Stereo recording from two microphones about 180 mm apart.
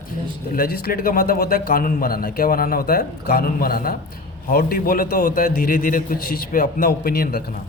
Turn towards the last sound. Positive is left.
turn(degrees=60)  # may be behind; listen again after turning